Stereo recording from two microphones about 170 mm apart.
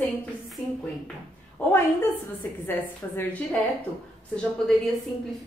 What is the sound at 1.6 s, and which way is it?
Speech, 10° left (ahead or behind).